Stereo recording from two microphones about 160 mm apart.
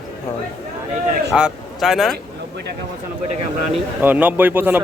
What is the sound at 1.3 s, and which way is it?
Speech, centre (ahead or behind).